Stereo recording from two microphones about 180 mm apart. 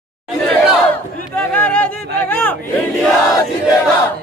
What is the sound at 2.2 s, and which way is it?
Speech, 10° left (ahead or behind).